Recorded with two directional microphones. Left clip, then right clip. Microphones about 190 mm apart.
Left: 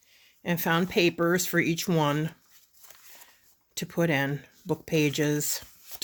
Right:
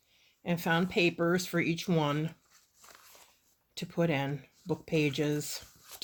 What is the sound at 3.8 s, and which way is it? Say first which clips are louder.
Speech: left 5 dB; 40° left (ahead or behind).